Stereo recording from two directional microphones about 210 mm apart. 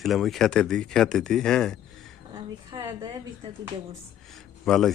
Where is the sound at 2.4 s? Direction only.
20° right (ahead or behind).